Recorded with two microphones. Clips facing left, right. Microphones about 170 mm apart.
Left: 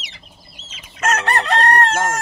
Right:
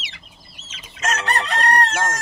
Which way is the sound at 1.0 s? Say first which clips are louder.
Left 4 dB; 55° left (ahead or behind).